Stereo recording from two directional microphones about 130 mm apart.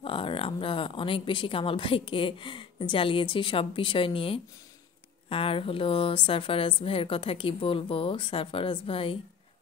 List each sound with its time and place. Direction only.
0.0 s a woman's voice: 40° left (ahead or behind)